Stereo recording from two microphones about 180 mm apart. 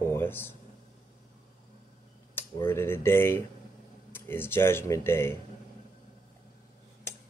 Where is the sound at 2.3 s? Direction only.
15° left (ahead or behind).